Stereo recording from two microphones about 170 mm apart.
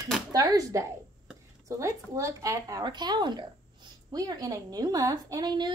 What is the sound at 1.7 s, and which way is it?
A woman's voice, 20° right (ahead or behind).